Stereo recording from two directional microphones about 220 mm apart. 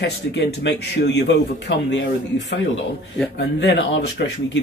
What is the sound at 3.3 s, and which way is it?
Speech, 50° left (ahead or behind).